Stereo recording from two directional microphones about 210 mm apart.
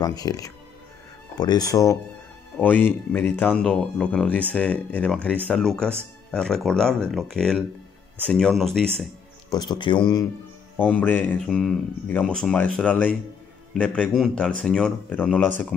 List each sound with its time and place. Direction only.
0.0 s a man's voice: 20° left (ahead or behind); by 8.8 s centre (ahead or behind)
9.5 s speech: 20° left (ahead or behind)
10.8 s a man's voice: 10° left (ahead or behind)